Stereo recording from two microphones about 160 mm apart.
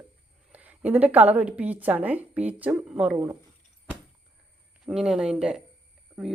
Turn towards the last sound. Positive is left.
turn(degrees=0)  # may be behind; listen again after turning